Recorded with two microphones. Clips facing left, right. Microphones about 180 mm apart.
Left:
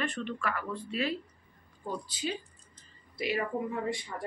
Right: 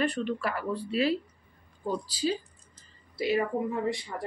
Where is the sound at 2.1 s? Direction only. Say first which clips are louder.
Right 6 dB; 35° right (ahead or behind).